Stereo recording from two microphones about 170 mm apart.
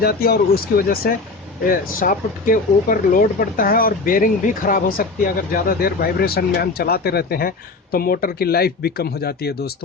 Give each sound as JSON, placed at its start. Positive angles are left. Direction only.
{"t": 0.0, "sound": "speech", "side_deg": 60}